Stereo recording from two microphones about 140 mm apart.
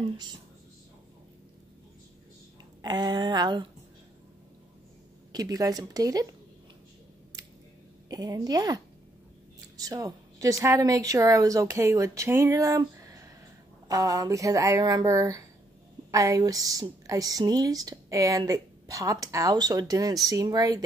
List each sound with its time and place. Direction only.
2.8 s a woman's voice: 30° right (ahead or behind)
5.3 s a woman's voice: 25° right (ahead or behind)
8.1 s a woman's voice: 25° right (ahead or behind)